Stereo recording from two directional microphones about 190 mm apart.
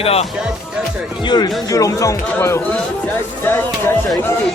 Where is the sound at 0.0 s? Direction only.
30° left (ahead or behind); by 3.9 s 10° left (ahead or behind).